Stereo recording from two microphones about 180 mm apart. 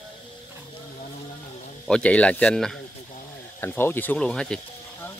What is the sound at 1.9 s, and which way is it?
Speech, 5° left (ahead or behind).